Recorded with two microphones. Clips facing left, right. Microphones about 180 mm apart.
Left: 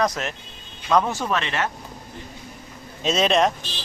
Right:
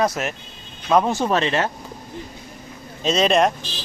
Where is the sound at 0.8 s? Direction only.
20° right (ahead or behind).